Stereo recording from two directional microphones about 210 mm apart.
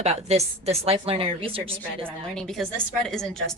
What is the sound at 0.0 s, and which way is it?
A woman's voice, 30° right (ahead or behind).